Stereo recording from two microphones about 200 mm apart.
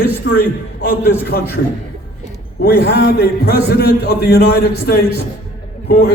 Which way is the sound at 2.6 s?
55° left (ahead or behind).